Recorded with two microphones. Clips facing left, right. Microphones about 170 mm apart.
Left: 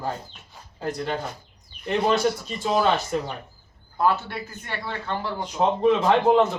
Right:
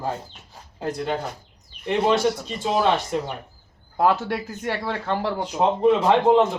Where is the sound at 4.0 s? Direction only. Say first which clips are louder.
Right 3 dB; 90° right.